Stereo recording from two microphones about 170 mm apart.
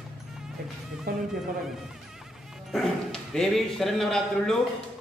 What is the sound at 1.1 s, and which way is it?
Speech, 65° right (ahead or behind).